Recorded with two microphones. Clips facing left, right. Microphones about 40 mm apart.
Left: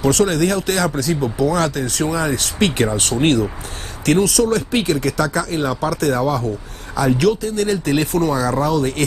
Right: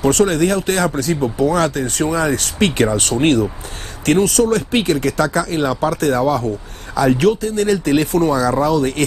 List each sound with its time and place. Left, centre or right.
0.0 s speech: right
4.0 s speech: right